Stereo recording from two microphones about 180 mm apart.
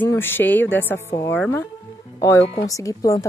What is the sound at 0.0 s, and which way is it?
A woman's voice, 10° left (ahead or behind).